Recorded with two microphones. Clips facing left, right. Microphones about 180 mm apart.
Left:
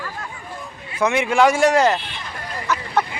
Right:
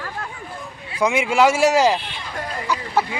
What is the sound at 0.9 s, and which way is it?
Speech, 10° right (ahead or behind).